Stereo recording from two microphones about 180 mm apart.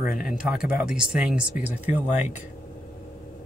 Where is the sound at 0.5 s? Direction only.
5° right (ahead or behind).